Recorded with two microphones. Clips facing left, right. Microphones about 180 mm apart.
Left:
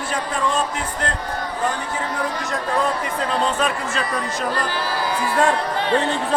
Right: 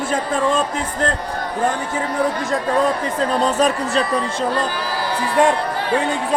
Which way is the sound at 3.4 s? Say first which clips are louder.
Right 4 dB; 40° right (ahead or behind).